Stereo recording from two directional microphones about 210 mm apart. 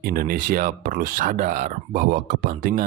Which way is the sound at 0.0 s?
45° right (ahead or behind).